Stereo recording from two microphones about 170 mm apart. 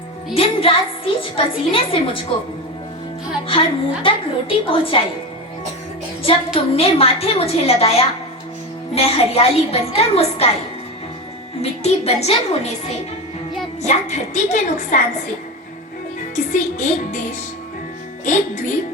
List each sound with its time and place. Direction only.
0.3 s a woman's voice: 30° left (ahead or behind)
3.4 s a woman's voice: 30° left (ahead or behind)
6.2 s a woman's voice: 35° left (ahead or behind)
11.6 s a woman's voice: 40° left (ahead or behind)
16.3 s a woman's voice: 45° left (ahead or behind)